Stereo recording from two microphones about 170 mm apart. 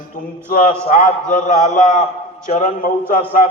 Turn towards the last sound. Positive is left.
turn(degrees=50)  # may be behind; listen again after turning